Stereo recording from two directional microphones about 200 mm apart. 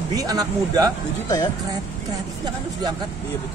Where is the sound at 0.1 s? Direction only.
20° right (ahead or behind).